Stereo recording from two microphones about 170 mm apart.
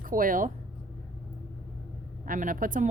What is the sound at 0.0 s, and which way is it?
Speech, 55° right (ahead or behind).